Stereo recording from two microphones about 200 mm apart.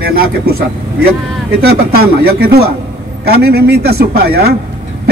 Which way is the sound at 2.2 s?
50° right (ahead or behind).